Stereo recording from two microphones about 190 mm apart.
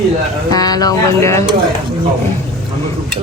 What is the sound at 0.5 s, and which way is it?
Speech, 20° left (ahead or behind).